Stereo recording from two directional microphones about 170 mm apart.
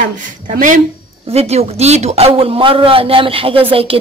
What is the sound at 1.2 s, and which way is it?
A man's voice, 35° right (ahead or behind).